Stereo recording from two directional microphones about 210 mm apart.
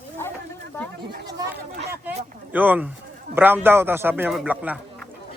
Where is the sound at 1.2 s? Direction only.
20° right (ahead or behind).